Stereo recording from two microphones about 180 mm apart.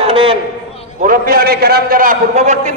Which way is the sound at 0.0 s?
30° right (ahead or behind).